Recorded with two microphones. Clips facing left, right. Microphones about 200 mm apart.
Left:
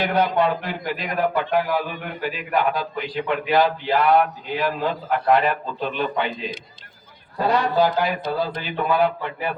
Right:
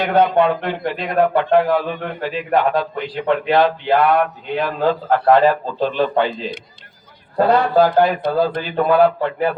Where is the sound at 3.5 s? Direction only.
60° right (ahead or behind).